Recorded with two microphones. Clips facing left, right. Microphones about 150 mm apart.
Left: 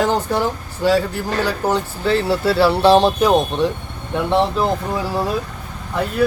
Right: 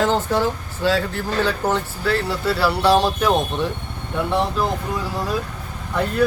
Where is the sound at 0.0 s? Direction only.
15° left (ahead or behind).